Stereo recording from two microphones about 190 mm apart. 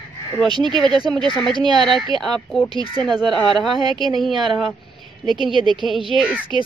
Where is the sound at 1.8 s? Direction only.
Centre (ahead or behind).